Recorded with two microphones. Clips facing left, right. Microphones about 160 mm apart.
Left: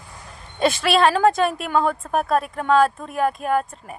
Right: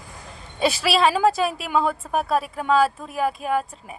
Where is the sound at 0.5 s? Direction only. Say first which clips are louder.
Left 2 dB; 5° right (ahead or behind).